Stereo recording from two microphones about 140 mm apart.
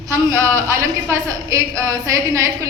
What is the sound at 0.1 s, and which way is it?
A woman's voice, 20° right (ahead or behind).